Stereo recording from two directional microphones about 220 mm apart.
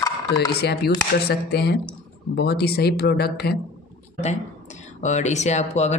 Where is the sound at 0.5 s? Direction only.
45° left (ahead or behind).